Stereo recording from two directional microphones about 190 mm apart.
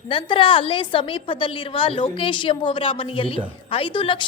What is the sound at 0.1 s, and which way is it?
A woman's voice, 25° left (ahead or behind).